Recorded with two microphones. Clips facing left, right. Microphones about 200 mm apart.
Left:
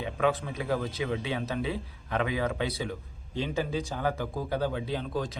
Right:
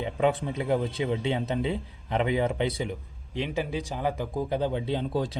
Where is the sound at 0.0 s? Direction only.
30° right (ahead or behind).